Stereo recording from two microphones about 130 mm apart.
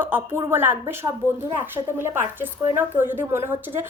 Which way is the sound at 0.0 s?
15° right (ahead or behind).